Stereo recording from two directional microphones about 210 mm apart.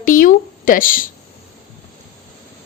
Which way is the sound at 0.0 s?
40° left (ahead or behind).